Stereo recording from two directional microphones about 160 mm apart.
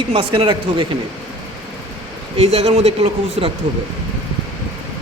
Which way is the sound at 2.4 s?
40° right (ahead or behind).